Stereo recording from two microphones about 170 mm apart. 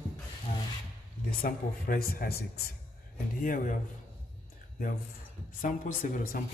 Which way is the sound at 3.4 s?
50° left (ahead or behind).